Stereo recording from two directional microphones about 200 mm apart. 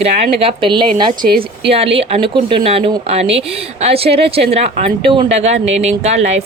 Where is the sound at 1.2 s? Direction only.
45° right (ahead or behind).